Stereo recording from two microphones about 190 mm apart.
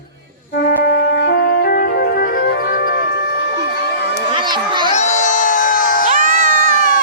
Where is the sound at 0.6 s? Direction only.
55° left (ahead or behind).